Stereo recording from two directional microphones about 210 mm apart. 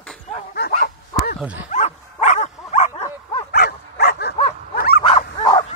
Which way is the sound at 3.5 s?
50° left (ahead or behind).